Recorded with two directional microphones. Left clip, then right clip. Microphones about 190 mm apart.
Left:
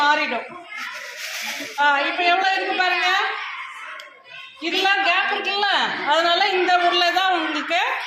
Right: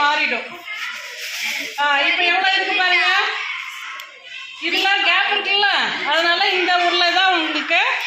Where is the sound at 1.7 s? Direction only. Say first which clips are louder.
Right 1 dB; 15° right (ahead or behind).